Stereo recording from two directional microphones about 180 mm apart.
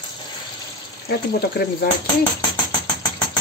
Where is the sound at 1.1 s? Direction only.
60° left (ahead or behind).